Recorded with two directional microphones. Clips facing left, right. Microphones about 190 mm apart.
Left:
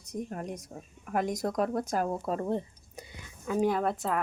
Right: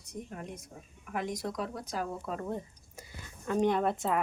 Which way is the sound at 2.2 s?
40° left (ahead or behind).